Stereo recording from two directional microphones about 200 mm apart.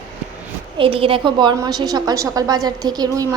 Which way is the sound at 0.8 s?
25° right (ahead or behind).